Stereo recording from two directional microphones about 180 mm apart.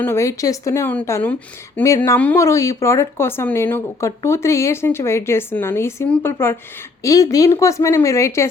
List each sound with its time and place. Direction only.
0.0 s a woman's voice: 15° left (ahead or behind)